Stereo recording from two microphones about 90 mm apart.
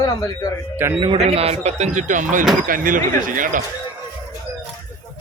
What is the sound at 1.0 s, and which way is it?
Speech, 80° right.